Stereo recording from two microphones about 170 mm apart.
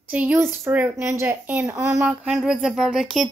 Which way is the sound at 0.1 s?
10° right (ahead or behind).